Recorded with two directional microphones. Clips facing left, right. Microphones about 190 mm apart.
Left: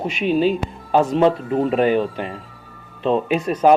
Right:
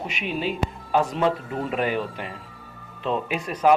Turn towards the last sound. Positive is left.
turn(degrees=30)  # may be behind; listen again after turning